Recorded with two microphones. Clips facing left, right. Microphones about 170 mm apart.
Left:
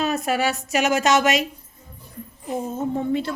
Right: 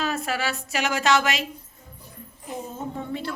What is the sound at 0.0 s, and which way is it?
A woman's voice, 20° left (ahead or behind).